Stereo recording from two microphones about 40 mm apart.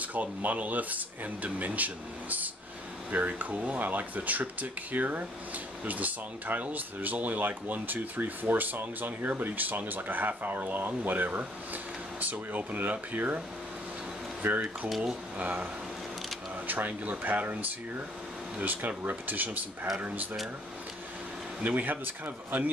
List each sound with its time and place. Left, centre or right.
0.0 s speech: right
14.4 s speech: right
15.3 s speech: right
16.6 s speech: right
21.6 s speech: right